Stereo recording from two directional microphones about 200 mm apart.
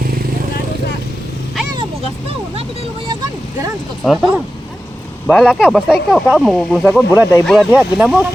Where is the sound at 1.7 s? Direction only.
25° right (ahead or behind).